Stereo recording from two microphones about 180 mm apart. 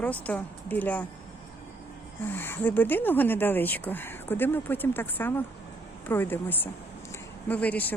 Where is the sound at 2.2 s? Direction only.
10° left (ahead or behind).